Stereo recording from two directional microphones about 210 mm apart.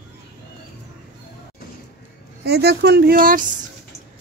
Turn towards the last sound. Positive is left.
turn(degrees=-40)  # may be behind; listen again after turning